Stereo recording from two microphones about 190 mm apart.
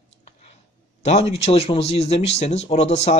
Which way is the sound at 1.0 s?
35° left (ahead or behind).